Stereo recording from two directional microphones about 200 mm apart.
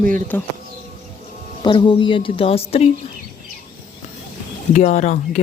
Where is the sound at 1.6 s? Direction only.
25° left (ahead or behind).